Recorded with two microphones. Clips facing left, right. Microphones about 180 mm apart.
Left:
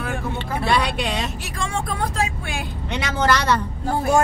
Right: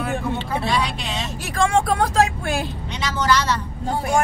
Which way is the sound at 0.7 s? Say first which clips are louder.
Left 6 dB; 60° left (ahead or behind).